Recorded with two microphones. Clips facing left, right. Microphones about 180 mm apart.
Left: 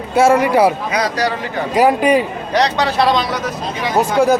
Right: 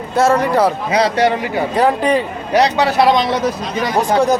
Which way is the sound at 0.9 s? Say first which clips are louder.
Right 4 dB; 25° right (ahead or behind).